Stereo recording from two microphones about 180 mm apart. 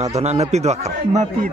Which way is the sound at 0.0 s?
40° right (ahead or behind).